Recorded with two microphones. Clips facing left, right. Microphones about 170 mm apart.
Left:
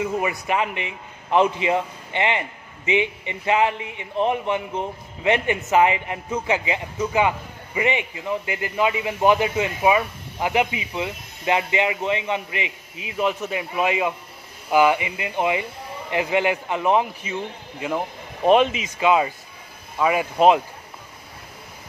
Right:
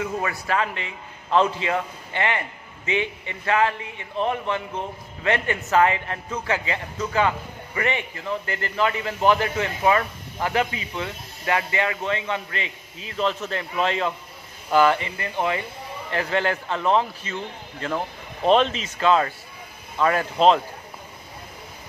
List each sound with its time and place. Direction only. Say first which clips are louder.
0.0 s a man's voice: left 3 dB; 20° left (ahead or behind)